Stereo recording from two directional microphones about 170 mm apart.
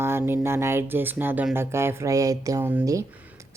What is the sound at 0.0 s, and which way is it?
A woman's voice, 15° right (ahead or behind).